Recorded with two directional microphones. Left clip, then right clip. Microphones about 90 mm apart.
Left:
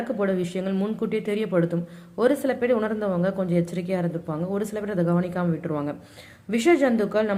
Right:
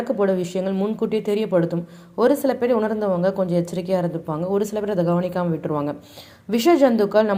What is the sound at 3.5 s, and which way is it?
A man's voice, 15° right (ahead or behind).